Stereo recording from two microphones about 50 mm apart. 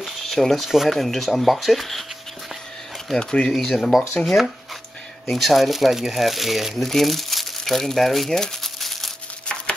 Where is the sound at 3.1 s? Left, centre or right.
Centre.